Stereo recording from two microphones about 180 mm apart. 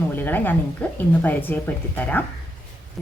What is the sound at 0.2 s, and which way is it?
A woman's voice, 10° left (ahead or behind).